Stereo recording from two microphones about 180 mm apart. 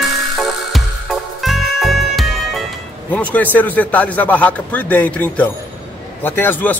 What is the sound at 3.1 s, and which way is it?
A man's voice, 10° left (ahead or behind).